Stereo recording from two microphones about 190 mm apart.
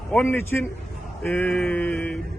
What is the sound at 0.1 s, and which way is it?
A man's voice, 10° left (ahead or behind).